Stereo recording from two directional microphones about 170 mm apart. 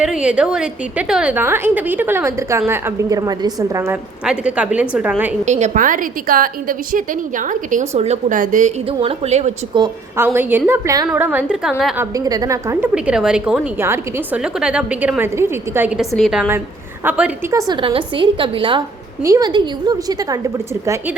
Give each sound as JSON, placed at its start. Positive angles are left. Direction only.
{"t": 0.0, "sound": "a woman's voice", "side_deg": -5}
{"t": 4.3, "sound": "a woman's voice", "side_deg": -5}
{"t": 5.5, "sound": "a woman's voice", "side_deg": -45}
{"t": 8.9, "sound": "a woman's voice", "side_deg": -35}
{"t": 10.2, "sound": "a woman's voice", "side_deg": -10}
{"t": 11.9, "sound": "a woman's voice", "side_deg": -20}
{"t": 12.9, "sound": "a woman's voice", "side_deg": -5}
{"t": 17.5, "sound": "a woman's voice", "side_deg": -20}